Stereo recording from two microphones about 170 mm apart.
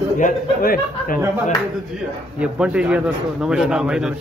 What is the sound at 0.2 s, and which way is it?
A man's voice, 60° left (ahead or behind).